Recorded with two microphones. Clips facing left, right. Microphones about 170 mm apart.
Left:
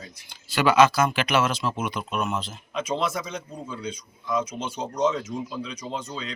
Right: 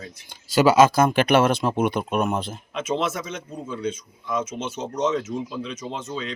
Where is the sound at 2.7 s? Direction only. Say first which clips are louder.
Right 1 dB; 5° right (ahead or behind).